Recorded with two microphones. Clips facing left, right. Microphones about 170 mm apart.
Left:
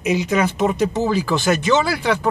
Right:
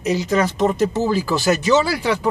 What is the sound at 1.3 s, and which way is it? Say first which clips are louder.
Speech: right 2 dB; 40° right (ahead or behind).